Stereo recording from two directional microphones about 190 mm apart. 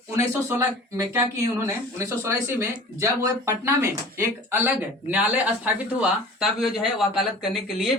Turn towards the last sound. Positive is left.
turn(degrees=0)  # may be behind; listen again after turning